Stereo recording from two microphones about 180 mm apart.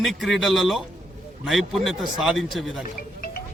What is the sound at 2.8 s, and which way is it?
Music, 50° left (ahead or behind).